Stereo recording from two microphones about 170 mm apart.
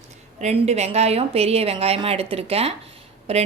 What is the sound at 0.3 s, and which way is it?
A woman's voice, 40° right (ahead or behind).